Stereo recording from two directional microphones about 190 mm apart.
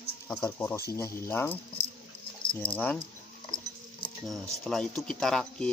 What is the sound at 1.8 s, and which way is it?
Dog, 30° left (ahead or behind).